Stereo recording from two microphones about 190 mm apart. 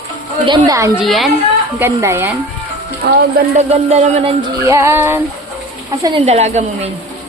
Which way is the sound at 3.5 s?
35° right (ahead or behind).